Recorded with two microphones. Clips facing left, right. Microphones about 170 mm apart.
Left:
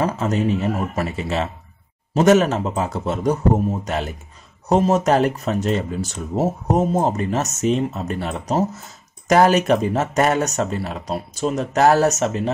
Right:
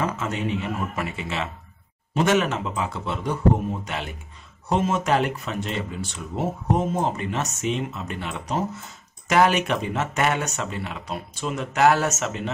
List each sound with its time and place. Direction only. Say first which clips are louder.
0.0 s speech: left 6 dB; 35° left (ahead or behind)